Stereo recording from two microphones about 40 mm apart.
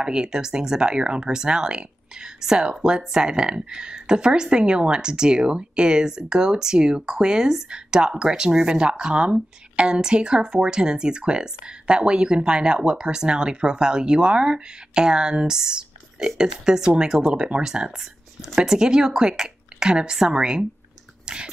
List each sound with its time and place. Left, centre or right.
0.0 s speech: right
17.9 s whispering: centre
18.5 s speech: centre
21.3 s a sound: right